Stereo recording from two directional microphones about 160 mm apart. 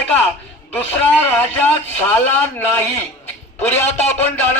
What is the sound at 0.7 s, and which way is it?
A man's voice, 10° left (ahead or behind).